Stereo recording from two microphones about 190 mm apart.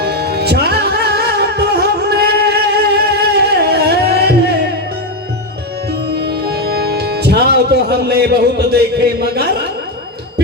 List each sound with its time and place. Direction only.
0.0 s music: 55° right (ahead or behind)
6.1 s music: 55° right (ahead or behind)